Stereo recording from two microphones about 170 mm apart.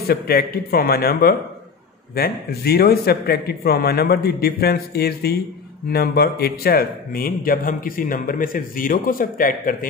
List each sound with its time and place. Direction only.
0.1 s a man's voice: 60° left (ahead or behind)